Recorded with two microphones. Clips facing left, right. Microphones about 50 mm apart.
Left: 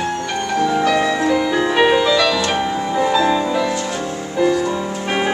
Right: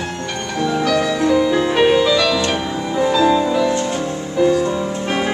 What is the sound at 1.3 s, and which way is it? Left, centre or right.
Music, centre.